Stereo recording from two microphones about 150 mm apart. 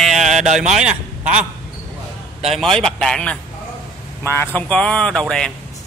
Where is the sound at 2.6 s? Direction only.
5° left (ahead or behind).